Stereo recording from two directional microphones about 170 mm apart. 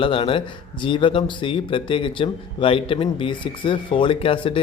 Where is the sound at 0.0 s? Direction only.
30° left (ahead or behind).